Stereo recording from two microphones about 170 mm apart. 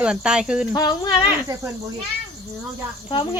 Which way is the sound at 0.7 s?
25° left (ahead or behind).